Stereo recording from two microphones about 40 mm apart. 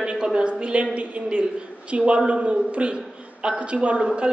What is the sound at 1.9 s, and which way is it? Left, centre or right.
A woman's voice, right.